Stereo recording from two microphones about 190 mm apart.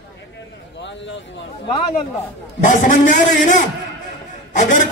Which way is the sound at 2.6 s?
40° left (ahead or behind).